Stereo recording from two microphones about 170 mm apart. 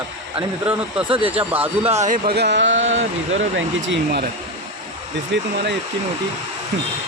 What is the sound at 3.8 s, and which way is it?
Speech, 90° right.